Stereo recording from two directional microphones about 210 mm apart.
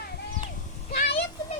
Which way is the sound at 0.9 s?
50° left (ahead or behind).